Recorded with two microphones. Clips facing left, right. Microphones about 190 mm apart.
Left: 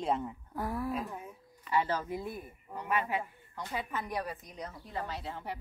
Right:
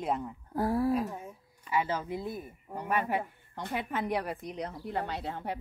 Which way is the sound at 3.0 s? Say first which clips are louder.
Right 3 dB; 60° right (ahead or behind).